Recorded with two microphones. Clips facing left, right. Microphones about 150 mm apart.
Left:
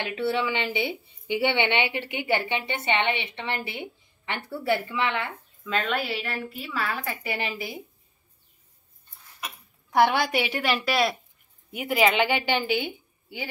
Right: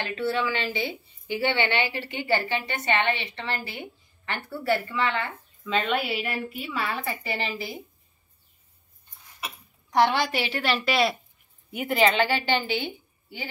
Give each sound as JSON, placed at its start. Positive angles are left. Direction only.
{"t": 0.1, "sound": "a woman's voice", "side_deg": 20}
{"t": 5.7, "sound": "a woman's voice", "side_deg": -5}
{"t": 9.8, "sound": "a woman's voice", "side_deg": 5}
{"t": 12.1, "sound": "a woman's voice", "side_deg": 15}